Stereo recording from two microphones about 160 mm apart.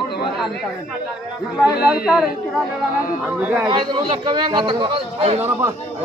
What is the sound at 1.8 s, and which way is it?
Speech, 70° left (ahead or behind).